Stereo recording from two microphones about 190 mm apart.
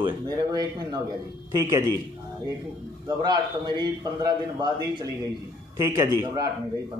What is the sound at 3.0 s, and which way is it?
A man's voice, 20° right (ahead or behind).